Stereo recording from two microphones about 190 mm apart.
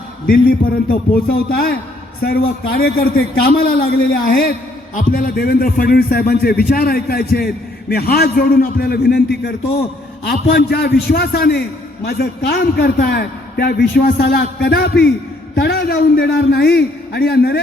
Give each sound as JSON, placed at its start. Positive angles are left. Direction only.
{"t": 0.3, "sound": "a man's voice", "side_deg": 50}